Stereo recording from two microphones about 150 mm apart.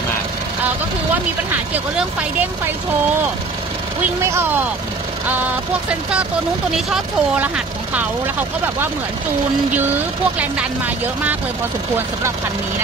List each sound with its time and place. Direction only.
4.2 s speech: 20° right (ahead or behind)
6.9 s speech: 5° right (ahead or behind)